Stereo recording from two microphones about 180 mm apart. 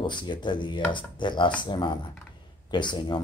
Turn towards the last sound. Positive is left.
turn(degrees=25)  # may be behind; listen again after turning